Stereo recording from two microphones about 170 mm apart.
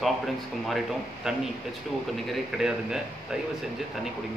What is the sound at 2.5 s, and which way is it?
Speech, centre (ahead or behind).